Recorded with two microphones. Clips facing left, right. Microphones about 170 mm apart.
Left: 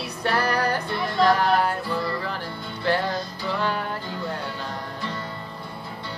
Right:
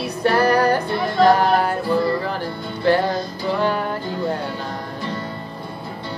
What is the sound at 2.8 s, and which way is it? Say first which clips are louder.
Music: right 6 dB; 40° right (ahead or behind).